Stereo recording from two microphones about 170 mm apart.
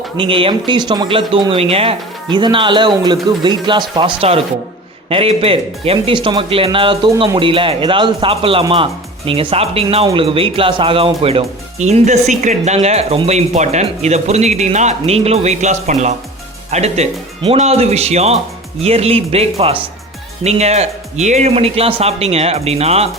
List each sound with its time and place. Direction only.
0.2 s speech: 30° right (ahead or behind)